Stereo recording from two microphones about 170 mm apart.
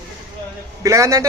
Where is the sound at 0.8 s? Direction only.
20° right (ahead or behind).